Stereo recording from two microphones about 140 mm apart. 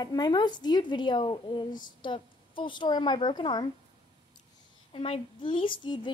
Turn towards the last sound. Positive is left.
turn(degrees=35)  # may be behind; listen again after turning